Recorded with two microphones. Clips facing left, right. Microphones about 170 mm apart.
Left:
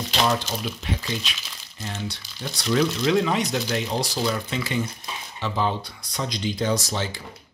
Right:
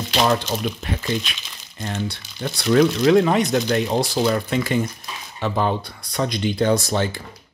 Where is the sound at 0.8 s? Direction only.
55° right (ahead or behind).